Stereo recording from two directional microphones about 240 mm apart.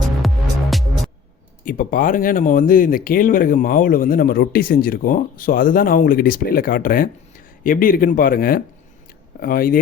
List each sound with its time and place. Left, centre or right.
0.7 s music: centre
1.6 s speech: left